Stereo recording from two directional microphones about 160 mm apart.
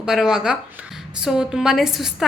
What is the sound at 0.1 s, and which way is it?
Speech, 5° right (ahead or behind).